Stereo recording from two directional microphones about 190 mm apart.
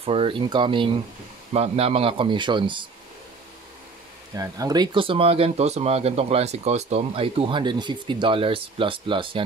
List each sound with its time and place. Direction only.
0.0 s speech: 30° right (ahead or behind)
4.4 s speech: 20° right (ahead or behind)